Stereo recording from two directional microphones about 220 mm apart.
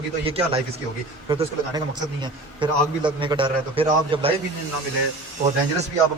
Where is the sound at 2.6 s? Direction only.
20° right (ahead or behind).